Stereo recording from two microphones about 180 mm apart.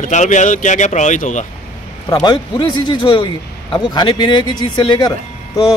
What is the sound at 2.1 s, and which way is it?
Speech, 25° left (ahead or behind).